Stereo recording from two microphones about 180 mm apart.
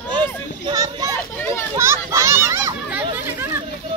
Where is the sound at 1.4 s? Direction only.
15° left (ahead or behind).